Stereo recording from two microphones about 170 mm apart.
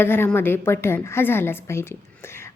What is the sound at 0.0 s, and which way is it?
A woman's voice, 15° left (ahead or behind).